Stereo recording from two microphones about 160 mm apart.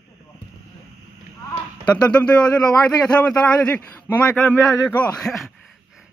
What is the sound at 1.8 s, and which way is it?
A man's voice, 5° left (ahead or behind).